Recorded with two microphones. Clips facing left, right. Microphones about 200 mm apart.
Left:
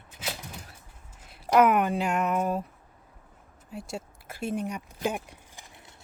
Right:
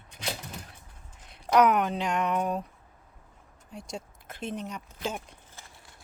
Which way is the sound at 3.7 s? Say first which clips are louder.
Left 2 dB; 5° left (ahead or behind).